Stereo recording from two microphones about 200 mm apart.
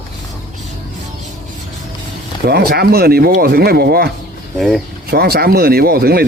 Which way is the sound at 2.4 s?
50° right (ahead or behind).